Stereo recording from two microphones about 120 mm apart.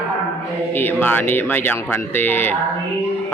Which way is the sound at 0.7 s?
15° left (ahead or behind).